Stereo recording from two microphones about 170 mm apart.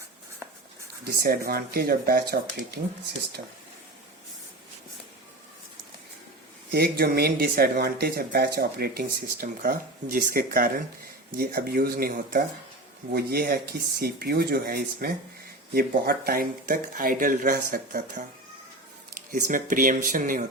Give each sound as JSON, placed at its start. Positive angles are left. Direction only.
{"t": 1.2, "sound": "speech", "side_deg": -65}
{"t": 6.7, "sound": "speech", "side_deg": -65}
{"t": 19.3, "sound": "speech", "side_deg": -50}